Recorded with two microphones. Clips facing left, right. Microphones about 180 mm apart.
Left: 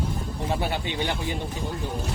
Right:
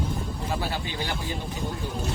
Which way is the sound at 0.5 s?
20° left (ahead or behind).